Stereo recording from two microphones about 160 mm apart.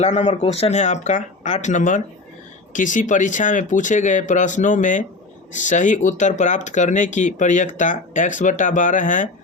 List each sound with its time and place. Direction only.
0.0 s speech: 45° left (ahead or behind)